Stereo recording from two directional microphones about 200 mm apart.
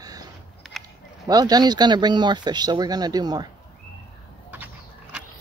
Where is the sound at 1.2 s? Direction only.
20° right (ahead or behind).